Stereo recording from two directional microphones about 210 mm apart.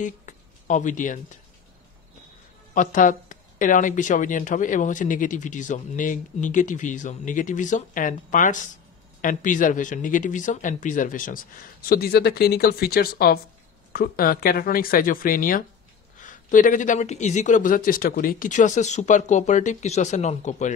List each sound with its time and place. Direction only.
0.0 s speech: 35° left (ahead or behind)
2.7 s speech: 40° left (ahead or behind)